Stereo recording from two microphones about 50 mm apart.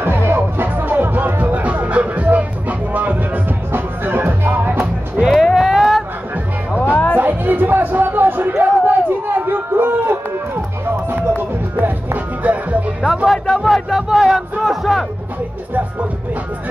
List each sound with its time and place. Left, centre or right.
0.0 s music: right
5.3 s a sound: centre
6.7 s music: left
7.2 s a sound: right
11.1 s music: right
12.4 s music: right
13.0 s music: centre
13.3 s a sound: centre
14.0 s music: centre